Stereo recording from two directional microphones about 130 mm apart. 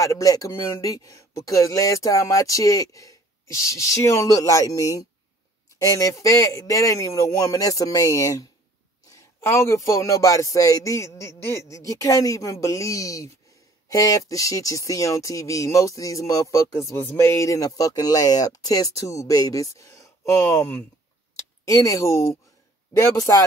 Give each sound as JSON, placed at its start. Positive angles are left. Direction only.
{"t": 0.0, "sound": "speech", "side_deg": 25}
{"t": 21.6, "sound": "speech", "side_deg": 25}